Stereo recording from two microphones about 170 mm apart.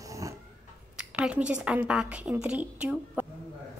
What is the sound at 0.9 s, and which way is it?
A woman's voice, 5° right (ahead or behind).